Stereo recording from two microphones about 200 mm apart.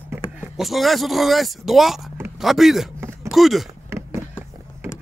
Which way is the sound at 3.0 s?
10° right (ahead or behind).